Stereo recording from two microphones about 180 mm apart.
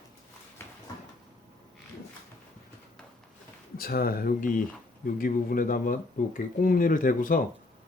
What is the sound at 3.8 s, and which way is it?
Speech, 55° left (ahead or behind).